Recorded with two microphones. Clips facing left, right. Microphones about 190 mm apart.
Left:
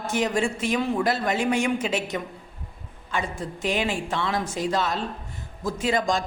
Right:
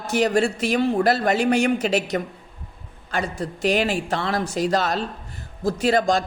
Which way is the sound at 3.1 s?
75° right (ahead or behind).